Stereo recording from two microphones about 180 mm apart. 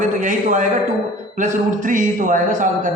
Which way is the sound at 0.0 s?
45° right (ahead or behind).